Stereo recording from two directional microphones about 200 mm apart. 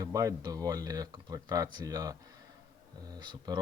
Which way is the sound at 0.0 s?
15° right (ahead or behind).